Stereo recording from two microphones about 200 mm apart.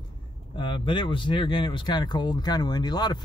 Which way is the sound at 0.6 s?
25° left (ahead or behind).